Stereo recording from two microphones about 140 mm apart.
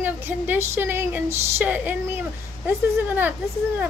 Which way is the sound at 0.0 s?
15° right (ahead or behind).